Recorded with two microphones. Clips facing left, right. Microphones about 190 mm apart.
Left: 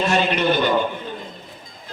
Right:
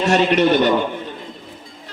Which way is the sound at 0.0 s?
80° right.